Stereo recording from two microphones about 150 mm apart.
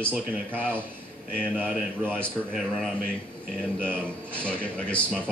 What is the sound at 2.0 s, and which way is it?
Speech, 10° right (ahead or behind).